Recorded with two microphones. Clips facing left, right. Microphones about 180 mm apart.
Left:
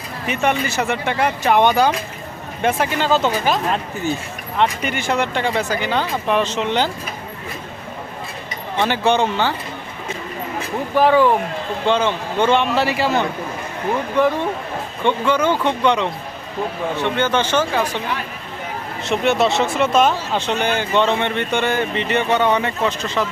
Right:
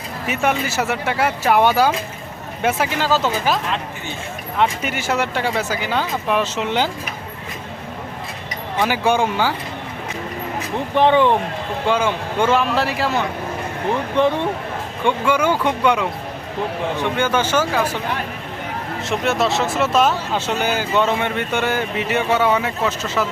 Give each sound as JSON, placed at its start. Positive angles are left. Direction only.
{"t": 0.3, "sound": "speech", "side_deg": -5}
{"t": 4.6, "sound": "speech", "side_deg": -5}
{"t": 8.8, "sound": "speech", "side_deg": -10}
{"t": 10.9, "sound": "speech", "side_deg": -20}
{"t": 11.9, "sound": "speech", "side_deg": -10}
{"t": 15.0, "sound": "speech", "side_deg": -10}
{"t": 19.0, "sound": "speech", "side_deg": 0}